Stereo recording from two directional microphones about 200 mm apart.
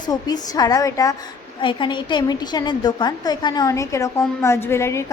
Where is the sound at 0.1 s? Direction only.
20° left (ahead or behind).